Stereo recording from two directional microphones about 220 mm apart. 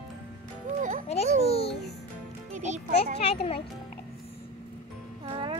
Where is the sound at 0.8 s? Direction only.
35° right (ahead or behind).